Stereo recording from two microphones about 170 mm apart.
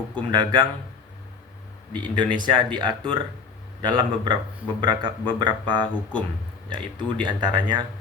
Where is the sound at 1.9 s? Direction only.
30° right (ahead or behind).